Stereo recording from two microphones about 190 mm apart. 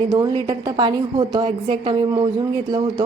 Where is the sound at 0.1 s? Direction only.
20° right (ahead or behind).